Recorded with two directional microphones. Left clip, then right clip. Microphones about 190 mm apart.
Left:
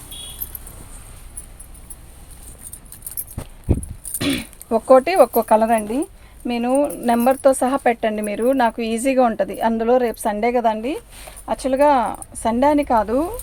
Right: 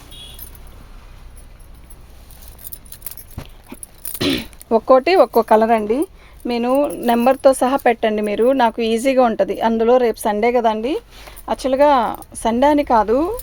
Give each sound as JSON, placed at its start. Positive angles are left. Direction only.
{"t": 4.2, "sound": "speech", "side_deg": -45}